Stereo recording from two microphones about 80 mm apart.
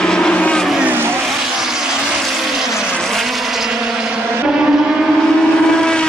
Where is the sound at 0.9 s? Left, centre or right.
Right.